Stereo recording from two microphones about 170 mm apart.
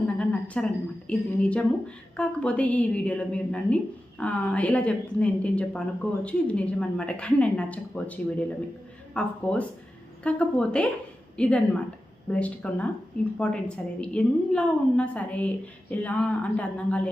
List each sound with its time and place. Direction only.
0.2 s a woman's voice: 5° left (ahead or behind)